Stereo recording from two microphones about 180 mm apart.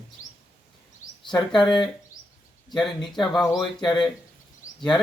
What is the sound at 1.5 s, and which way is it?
Speech, 25° left (ahead or behind).